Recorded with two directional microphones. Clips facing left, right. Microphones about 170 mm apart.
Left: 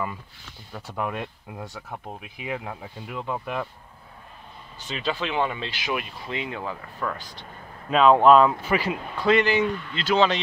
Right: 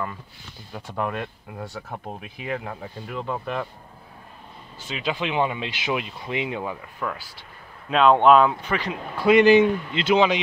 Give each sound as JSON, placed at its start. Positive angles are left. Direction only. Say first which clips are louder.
{"t": 0.7, "sound": "speech", "louder": "right 2 dB", "side_deg": 5}
{"t": 4.7, "sound": "speech", "louder": "right 1 dB", "side_deg": -10}
{"t": 9.1, "sound": "speech", "louder": "right 6 dB", "side_deg": -10}